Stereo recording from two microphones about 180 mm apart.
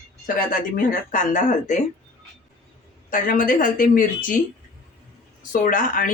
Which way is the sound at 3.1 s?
50° left (ahead or behind).